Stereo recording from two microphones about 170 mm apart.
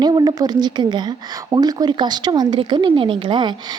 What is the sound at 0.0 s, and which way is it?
A woman's voice, 25° right (ahead or behind).